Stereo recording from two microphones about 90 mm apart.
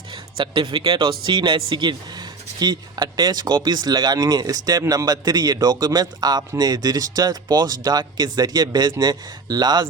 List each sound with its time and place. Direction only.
0.3 s a man's voice: 70° right (ahead or behind); by 9.8 s 50° right (ahead or behind)